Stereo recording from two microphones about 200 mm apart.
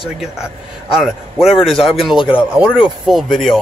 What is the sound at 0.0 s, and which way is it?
Speech, 5° right (ahead or behind).